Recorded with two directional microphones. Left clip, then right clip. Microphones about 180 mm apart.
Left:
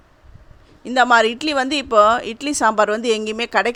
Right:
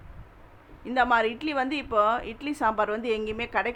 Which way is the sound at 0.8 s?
45° left (ahead or behind).